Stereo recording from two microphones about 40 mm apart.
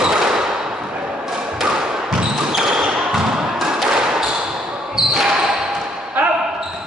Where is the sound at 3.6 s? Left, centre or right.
Centre.